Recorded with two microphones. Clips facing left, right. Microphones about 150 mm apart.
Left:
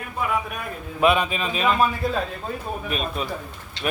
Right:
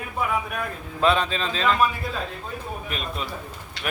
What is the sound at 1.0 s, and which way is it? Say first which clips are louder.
Speech: left 2 dB; 15° left (ahead or behind).